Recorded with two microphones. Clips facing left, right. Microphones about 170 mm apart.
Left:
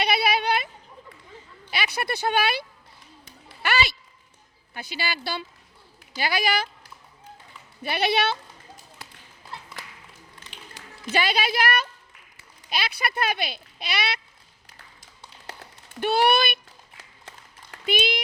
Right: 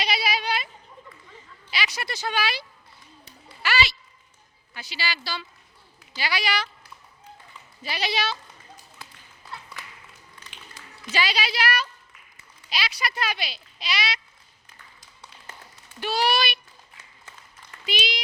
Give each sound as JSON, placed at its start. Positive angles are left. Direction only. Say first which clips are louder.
{"t": 0.0, "sound": "a sound", "louder": "left 4 dB", "side_deg": 60}
{"t": 1.7, "sound": "a woman's voice", "louder": "left 3 dB", "side_deg": 55}
{"t": 7.8, "sound": "speech", "louder": "left 5 dB", "side_deg": 55}
{"t": 11.0, "sound": "a woman's voice", "louder": "left 3 dB", "side_deg": 50}
{"t": 16.0, "sound": "speech", "louder": "left 4 dB", "side_deg": 55}
{"t": 17.7, "sound": "a sound", "louder": "left 5 dB", "side_deg": 55}